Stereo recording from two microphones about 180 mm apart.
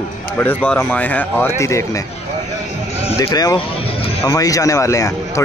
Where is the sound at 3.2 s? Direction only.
20° left (ahead or behind).